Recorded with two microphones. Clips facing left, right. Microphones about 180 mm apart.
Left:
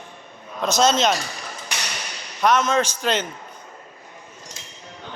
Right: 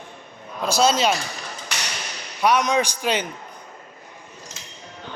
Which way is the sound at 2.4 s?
15° right (ahead or behind).